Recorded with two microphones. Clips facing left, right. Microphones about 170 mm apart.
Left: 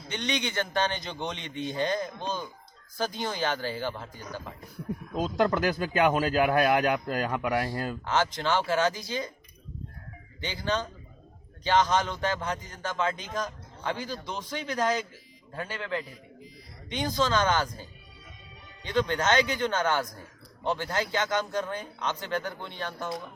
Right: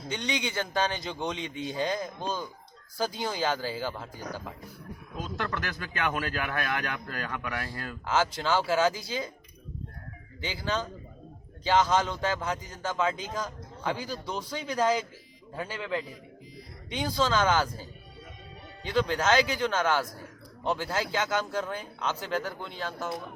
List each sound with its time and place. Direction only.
0.1 s a man's voice: 10° right (ahead or behind)
5.1 s speech: 35° left (ahead or behind)
7.5 s speech: 15° left (ahead or behind)
8.0 s a man's voice: 5° right (ahead or behind)
10.4 s a man's voice: 5° right (ahead or behind)
18.9 s a man's voice: 5° right (ahead or behind)